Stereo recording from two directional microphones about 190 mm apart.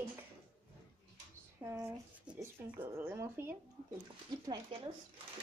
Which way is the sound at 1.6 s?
15° right (ahead or behind).